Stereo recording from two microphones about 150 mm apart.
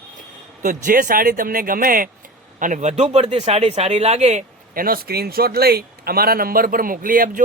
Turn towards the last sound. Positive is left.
turn(degrees=-70)  # may be behind; listen again after turning